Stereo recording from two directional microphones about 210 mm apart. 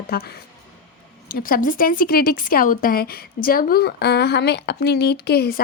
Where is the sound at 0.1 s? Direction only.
45° left (ahead or behind).